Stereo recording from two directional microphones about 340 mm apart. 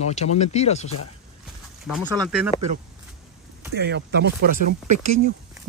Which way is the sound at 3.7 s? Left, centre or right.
Right.